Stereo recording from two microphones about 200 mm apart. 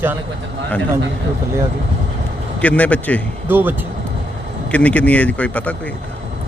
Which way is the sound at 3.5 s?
10° right (ahead or behind).